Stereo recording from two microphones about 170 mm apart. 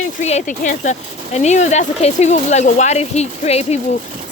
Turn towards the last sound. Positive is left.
turn(degrees=40)  # may be behind; listen again after turning